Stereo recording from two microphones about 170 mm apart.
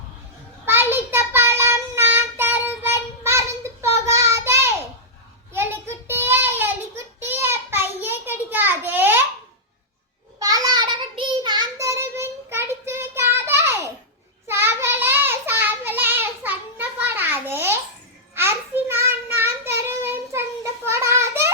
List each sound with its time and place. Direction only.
0.6 s child singing: 15° right (ahead or behind)
10.4 s child singing: 20° right (ahead or behind)
20.8 s a sound: 15° right (ahead or behind)